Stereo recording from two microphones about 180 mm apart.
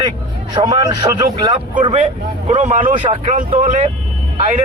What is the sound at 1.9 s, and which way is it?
Speech, 35° right (ahead or behind).